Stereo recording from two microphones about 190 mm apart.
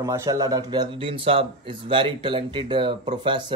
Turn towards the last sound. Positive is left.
turn(degrees=-25)  # may be behind; listen again after turning